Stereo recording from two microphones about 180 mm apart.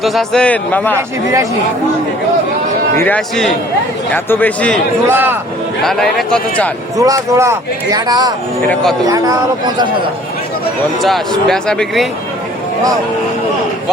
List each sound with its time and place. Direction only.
0.0 s a man's voice: centre (ahead or behind)
0.9 s speech: 15° right (ahead or behind)
2.9 s a man's voice: 10° left (ahead or behind)
5.0 s speech: 10° right (ahead or behind)
5.8 s a man's voice: centre (ahead or behind)
6.9 s speech: 20° right (ahead or behind)
8.7 s a man's voice: centre (ahead or behind)
9.0 s speech: 20° right (ahead or behind)
11.4 s a man's voice: 5° left (ahead or behind)